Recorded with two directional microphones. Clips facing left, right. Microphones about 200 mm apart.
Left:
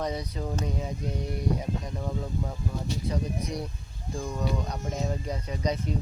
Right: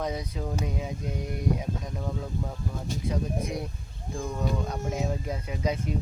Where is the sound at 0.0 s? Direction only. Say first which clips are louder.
Even; centre (ahead or behind).